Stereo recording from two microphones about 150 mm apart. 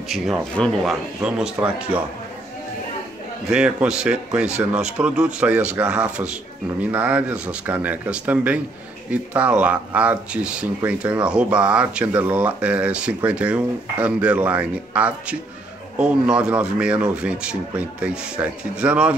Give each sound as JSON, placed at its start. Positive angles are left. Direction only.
{"t": 0.1, "sound": "speech", "side_deg": 0}
{"t": 3.4, "sound": "speech", "side_deg": -5}